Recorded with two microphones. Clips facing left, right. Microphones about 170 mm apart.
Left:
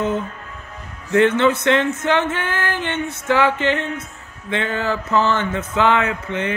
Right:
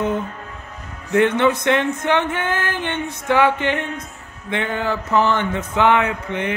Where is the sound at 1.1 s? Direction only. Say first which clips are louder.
Left 1 dB; 15° right (ahead or behind).